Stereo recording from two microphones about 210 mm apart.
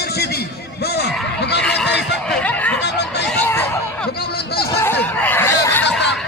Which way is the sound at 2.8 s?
55° left (ahead or behind).